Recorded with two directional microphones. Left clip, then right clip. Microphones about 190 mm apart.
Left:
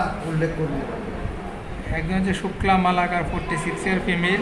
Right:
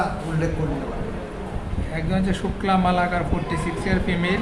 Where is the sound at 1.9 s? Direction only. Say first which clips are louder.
Left 1 dB; 15° right (ahead or behind).